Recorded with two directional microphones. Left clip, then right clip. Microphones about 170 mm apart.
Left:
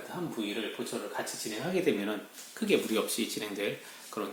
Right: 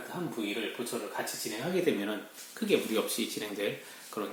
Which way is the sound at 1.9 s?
20° left (ahead or behind).